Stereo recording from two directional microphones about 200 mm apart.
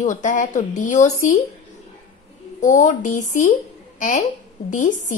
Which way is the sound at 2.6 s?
40° left (ahead or behind).